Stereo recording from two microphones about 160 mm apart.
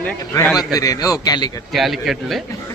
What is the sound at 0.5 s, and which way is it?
Speech, 25° left (ahead or behind).